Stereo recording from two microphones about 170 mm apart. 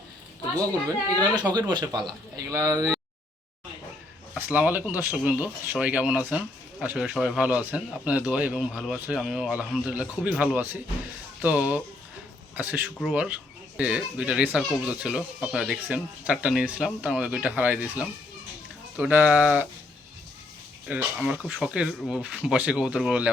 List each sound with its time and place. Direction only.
1.2 s speech: 25° right (ahead or behind)
2.7 s speech: 5° left (ahead or behind)
4.4 s speech: 10° right (ahead or behind)
18.9 s speech: 10° right (ahead or behind)
20.8 s speech: centre (ahead or behind)